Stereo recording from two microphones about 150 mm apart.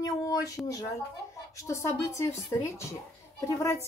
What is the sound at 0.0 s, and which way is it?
Speech, 20° left (ahead or behind).